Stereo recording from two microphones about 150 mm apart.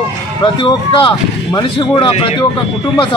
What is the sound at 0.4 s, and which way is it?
A man's voice, 35° left (ahead or behind).